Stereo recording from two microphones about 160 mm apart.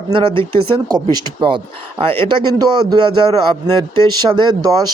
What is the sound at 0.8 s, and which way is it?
Speech, 25° right (ahead or behind).